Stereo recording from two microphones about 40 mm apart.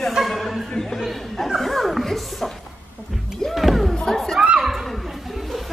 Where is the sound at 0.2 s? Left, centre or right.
Centre.